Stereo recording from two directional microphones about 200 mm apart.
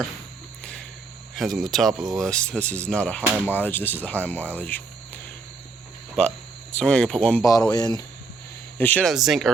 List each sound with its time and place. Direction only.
0.6 s a sound: 5° left (ahead or behind)
1.4 s speech: centre (ahead or behind)
3.2 s speech: 10° right (ahead or behind)
3.5 s speech: 10° left (ahead or behind)
6.7 s speech: 5° left (ahead or behind)
7.7 s speech: 20° left (ahead or behind)
8.8 s speech: 5° left (ahead or behind)